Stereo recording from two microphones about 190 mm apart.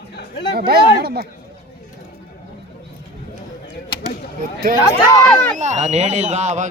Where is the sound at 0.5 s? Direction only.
55° right (ahead or behind).